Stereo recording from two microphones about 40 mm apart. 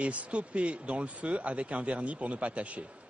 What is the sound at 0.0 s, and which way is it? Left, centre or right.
Speech, right.